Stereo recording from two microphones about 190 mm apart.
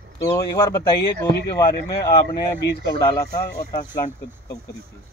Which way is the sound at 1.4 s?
60° left (ahead or behind).